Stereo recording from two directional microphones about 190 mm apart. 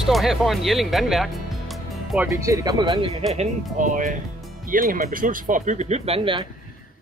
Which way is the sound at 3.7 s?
40° right (ahead or behind).